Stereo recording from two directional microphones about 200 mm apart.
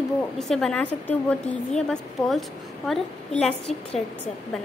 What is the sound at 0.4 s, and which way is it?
A woman's voice, centre (ahead or behind).